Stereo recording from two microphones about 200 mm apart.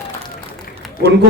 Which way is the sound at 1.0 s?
55° right (ahead or behind).